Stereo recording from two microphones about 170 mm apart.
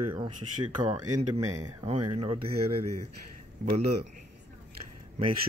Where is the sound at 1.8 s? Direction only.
35° right (ahead or behind).